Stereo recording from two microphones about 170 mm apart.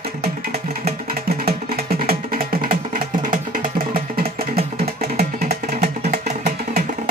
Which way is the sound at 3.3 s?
55° right (ahead or behind).